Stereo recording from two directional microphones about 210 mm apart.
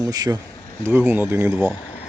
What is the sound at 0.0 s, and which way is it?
Speech, 20° right (ahead or behind).